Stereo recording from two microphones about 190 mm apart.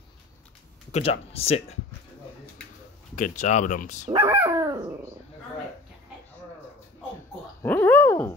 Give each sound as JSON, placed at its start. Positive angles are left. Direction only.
{"t": 0.9, "sound": "speech", "side_deg": 30}
{"t": 3.2, "sound": "speech", "side_deg": 40}
{"t": 4.2, "sound": "speech", "side_deg": -15}
{"t": 7.6, "sound": "dog", "side_deg": 10}